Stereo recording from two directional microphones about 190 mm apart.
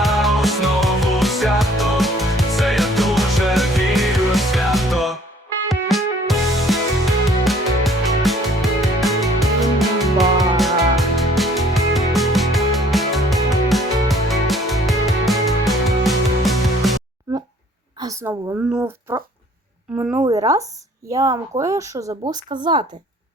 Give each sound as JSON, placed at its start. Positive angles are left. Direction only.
{"t": 0.0, "sound": "music", "side_deg": 0}
{"t": 18.0, "sound": "a sound", "side_deg": -15}
{"t": 20.0, "sound": "speech", "side_deg": -10}